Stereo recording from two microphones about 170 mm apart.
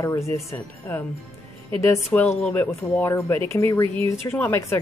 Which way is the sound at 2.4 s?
10° left (ahead or behind).